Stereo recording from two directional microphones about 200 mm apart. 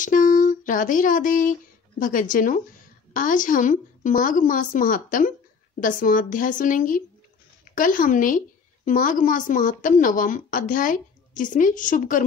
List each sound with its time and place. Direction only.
0.0 s a woman's voice: 40° left (ahead or behind)